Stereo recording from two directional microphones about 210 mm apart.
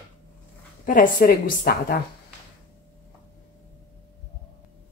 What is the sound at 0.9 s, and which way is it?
A woman's voice, 40° left (ahead or behind).